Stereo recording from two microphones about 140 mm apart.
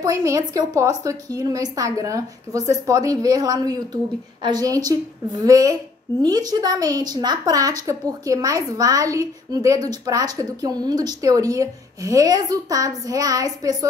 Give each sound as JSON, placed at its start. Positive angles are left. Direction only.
{"t": 0.0, "sound": "a woman's voice", "side_deg": -25}